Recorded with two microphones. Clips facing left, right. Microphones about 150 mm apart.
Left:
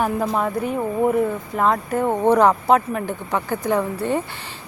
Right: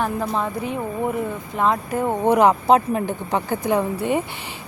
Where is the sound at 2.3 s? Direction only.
15° right (ahead or behind).